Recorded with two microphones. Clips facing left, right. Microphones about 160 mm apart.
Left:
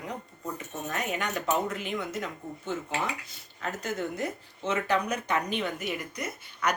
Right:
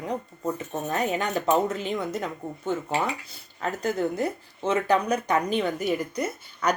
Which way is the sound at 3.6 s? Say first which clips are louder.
Right 6 dB; 35° right (ahead or behind).